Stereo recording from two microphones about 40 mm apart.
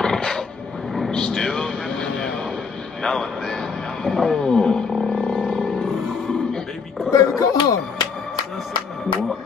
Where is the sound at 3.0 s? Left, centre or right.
Centre.